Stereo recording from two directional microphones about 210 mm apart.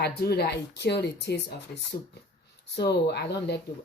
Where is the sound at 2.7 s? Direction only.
50° left (ahead or behind).